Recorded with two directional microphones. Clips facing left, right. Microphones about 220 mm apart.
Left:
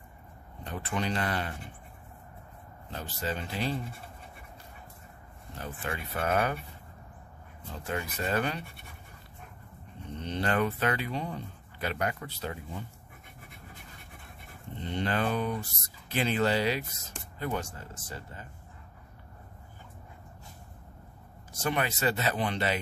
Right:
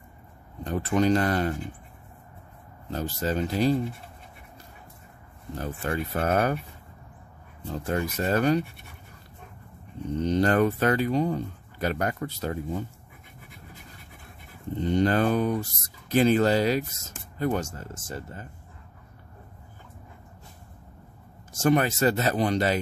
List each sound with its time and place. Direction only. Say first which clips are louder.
0.7 s speech: right 10 dB; 45° right (ahead or behind)
2.9 s speech: right 7 dB; 45° right (ahead or behind)
5.6 s speech: right 7 dB; 40° right (ahead or behind)
7.7 s speech: right 7 dB; 40° right (ahead or behind)
10.1 s speech: right 8 dB; 40° right (ahead or behind)
14.8 s speech: right 8 dB; 45° right (ahead or behind)
21.5 s speech: right 8 dB; 45° right (ahead or behind)